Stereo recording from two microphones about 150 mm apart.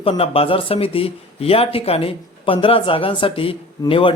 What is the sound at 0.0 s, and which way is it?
Speech, 40° left (ahead or behind).